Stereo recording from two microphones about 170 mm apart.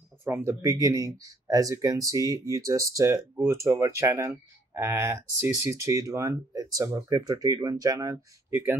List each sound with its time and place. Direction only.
0.2 s speech: 15° right (ahead or behind)